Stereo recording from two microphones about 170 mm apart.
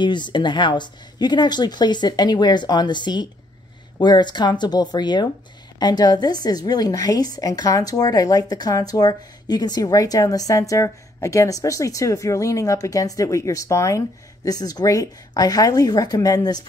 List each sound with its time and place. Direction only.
0.0 s speech: 25° left (ahead or behind)